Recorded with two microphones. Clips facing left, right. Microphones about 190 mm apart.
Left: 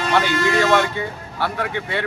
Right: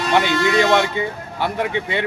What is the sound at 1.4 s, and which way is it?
Speech, 20° right (ahead or behind).